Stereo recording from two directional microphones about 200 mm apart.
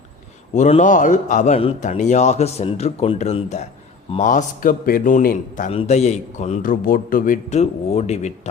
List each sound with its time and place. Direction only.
0.5 s a man's voice: 35° left (ahead or behind)